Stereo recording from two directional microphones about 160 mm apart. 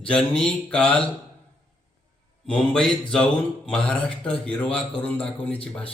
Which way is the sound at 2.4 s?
5° left (ahead or behind).